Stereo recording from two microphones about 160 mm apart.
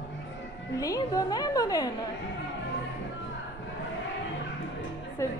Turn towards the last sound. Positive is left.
turn(degrees=20)  # may be behind; listen again after turning